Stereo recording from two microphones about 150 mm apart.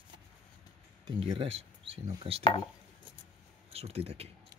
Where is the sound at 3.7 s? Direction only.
40° right (ahead or behind).